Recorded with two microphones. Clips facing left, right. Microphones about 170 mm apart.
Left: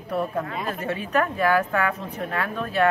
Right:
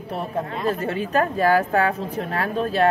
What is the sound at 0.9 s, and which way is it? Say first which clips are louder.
A woman's voice: right 2 dB; 35° right (ahead or behind).